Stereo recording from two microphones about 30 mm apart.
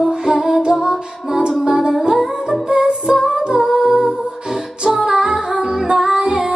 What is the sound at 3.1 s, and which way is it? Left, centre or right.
Music, centre.